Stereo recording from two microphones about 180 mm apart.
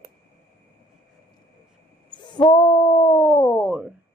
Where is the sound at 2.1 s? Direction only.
25° left (ahead or behind).